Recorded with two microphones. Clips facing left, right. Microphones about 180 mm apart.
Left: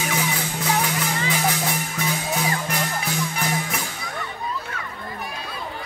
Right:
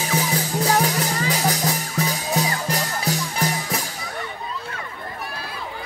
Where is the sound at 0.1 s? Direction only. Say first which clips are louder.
Right 3 dB; 35° right (ahead or behind).